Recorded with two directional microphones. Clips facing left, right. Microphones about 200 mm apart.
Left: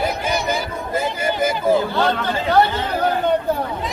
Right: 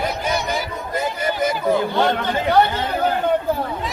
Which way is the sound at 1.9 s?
15° right (ahead or behind).